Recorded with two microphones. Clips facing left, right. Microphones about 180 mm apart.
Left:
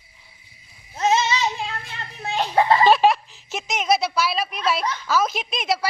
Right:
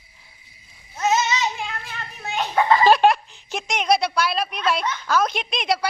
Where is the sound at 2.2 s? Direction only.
30° left (ahead or behind).